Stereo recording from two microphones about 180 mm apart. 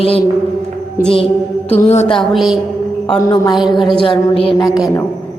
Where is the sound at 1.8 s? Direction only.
30° left (ahead or behind).